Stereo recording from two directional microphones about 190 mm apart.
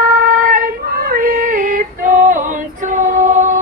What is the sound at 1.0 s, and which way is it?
Female singing, 50° right (ahead or behind).